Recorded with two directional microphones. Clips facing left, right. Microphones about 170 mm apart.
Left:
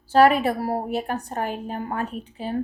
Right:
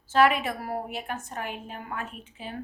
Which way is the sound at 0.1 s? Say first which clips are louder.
Left 6 dB; 40° left (ahead or behind).